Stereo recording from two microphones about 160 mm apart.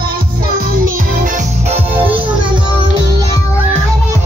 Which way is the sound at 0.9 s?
55° right (ahead or behind).